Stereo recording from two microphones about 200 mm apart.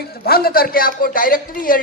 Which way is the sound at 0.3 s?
50° left (ahead or behind).